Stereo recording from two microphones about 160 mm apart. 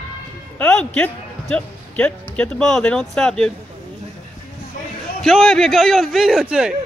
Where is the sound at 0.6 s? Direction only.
10° left (ahead or behind).